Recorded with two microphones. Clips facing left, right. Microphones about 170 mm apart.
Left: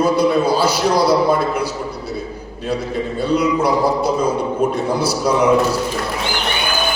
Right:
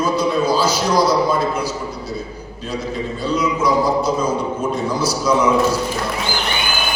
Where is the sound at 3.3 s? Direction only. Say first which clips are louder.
Left 2 dB; 60° left (ahead or behind).